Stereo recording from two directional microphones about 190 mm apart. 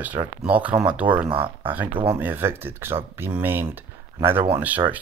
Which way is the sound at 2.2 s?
10° right (ahead or behind).